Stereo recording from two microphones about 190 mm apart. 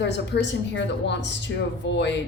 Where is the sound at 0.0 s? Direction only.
65° left (ahead or behind).